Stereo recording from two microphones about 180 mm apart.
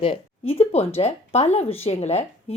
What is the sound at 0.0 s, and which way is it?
Speech, 30° left (ahead or behind).